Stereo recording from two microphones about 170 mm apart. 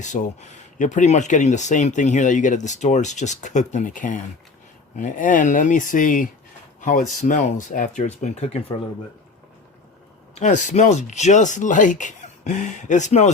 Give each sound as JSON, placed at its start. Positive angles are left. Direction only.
{"t": 0.0, "sound": "speech", "side_deg": 45}
{"t": 10.3, "sound": "speech", "side_deg": 45}